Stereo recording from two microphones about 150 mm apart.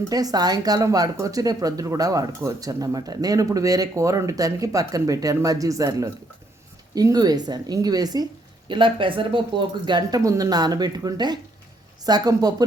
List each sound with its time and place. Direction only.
0.1 s speech: 25° right (ahead or behind)